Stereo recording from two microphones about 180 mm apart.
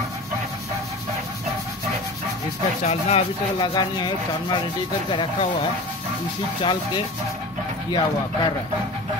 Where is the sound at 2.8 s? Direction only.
35° left (ahead or behind).